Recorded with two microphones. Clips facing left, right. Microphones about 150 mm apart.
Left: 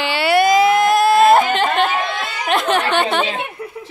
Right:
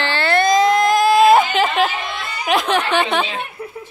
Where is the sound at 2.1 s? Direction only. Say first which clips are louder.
Left 3 dB; 90° left.